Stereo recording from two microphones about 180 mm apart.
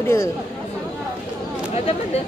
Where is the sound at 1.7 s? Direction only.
35° left (ahead or behind).